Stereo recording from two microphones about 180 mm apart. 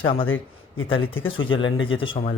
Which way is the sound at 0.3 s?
90° left.